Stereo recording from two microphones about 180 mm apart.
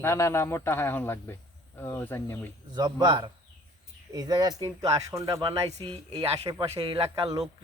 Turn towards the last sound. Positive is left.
turn(degrees=-30)  # may be behind; listen again after turning